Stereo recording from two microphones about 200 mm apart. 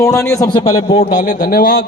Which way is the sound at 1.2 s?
40° left (ahead or behind).